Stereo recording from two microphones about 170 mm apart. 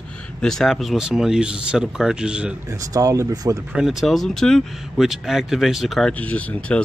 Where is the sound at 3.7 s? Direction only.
5° right (ahead or behind).